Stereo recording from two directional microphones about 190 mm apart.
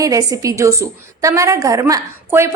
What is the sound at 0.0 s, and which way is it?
A woman's voice, 20° right (ahead or behind).